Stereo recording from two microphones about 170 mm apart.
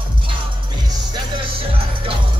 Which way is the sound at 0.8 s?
25° right (ahead or behind).